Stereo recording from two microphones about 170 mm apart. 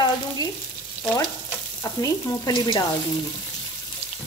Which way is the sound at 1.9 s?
25° left (ahead or behind).